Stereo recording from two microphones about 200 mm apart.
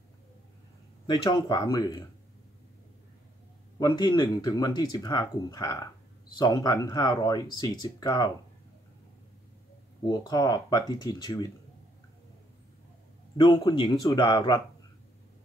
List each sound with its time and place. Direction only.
1.0 s speech: 20° left (ahead or behind)
3.8 s speech: 20° left (ahead or behind)
10.0 s speech: 20° left (ahead or behind)
13.4 s speech: 25° left (ahead or behind)